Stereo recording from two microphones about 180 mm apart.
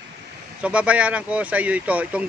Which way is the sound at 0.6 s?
5° right (ahead or behind).